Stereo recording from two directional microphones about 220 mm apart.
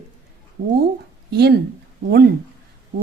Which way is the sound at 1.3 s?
50° right (ahead or behind).